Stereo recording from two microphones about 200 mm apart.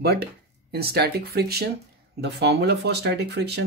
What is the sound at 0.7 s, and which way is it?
Speech, 55° right (ahead or behind).